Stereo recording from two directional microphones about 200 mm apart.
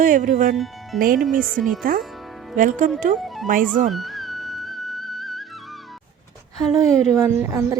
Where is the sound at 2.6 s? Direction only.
40° right (ahead or behind).